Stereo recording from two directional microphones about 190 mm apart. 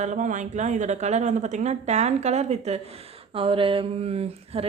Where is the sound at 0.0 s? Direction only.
40° right (ahead or behind).